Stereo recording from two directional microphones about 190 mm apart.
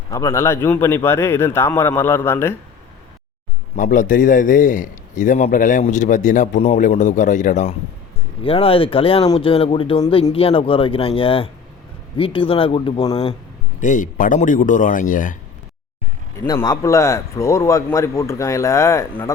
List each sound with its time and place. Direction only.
0.1 s a man's voice: 15° left (ahead or behind)
3.8 s a man's voice: 45° left (ahead or behind)
8.4 s speech: 30° left (ahead or behind)
13.8 s a man's voice: 45° left (ahead or behind)
16.5 s a man's voice: 15° left (ahead or behind)